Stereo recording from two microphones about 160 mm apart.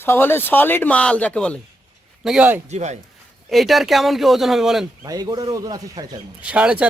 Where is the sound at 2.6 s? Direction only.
45° right (ahead or behind).